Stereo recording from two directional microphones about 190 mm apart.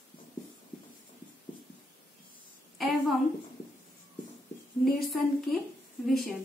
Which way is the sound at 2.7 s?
Centre (ahead or behind).